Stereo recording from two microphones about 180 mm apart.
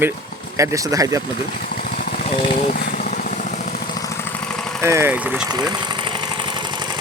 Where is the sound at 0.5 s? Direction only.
15° right (ahead or behind).